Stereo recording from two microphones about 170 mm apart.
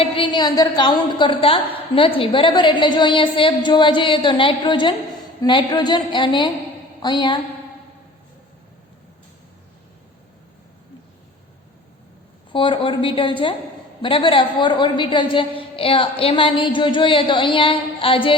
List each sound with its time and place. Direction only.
0.0 s a woman's voice: 30° left (ahead or behind)
12.5 s a woman's voice: 30° left (ahead or behind)